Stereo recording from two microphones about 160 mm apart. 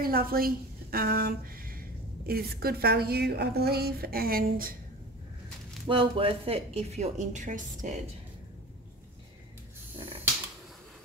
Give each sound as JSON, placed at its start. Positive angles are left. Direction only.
{"t": 0.0, "sound": "a woman's voice", "side_deg": -65}
{"t": 5.9, "sound": "speech", "side_deg": -35}